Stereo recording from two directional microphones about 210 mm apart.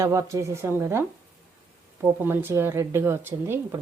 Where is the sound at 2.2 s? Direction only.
10° right (ahead or behind).